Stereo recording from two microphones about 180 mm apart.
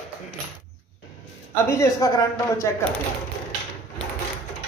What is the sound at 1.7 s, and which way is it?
Speech, 20° left (ahead or behind).